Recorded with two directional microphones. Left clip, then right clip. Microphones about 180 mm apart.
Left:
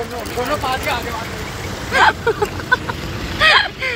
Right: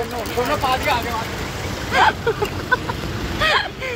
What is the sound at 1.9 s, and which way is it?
Speech, 5° left (ahead or behind).